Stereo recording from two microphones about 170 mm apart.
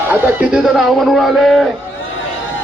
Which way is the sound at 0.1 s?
10° right (ahead or behind).